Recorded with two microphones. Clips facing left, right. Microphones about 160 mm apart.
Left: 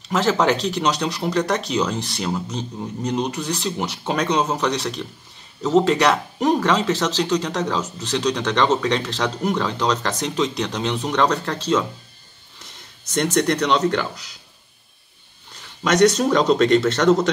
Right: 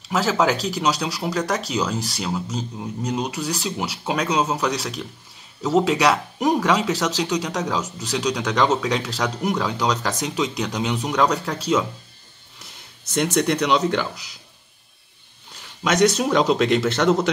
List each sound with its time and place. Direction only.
0.1 s speech: 5° right (ahead or behind)
13.1 s speech: 5° right (ahead or behind)
15.8 s speech: 5° right (ahead or behind)